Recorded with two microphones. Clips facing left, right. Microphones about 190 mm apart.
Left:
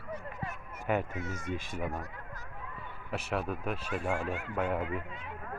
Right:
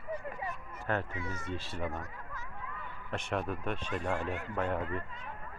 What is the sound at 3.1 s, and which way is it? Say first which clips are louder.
Speech: left 1 dB; 5° left (ahead or behind).